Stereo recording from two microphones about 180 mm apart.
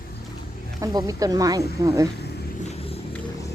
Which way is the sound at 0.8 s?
20° right (ahead or behind).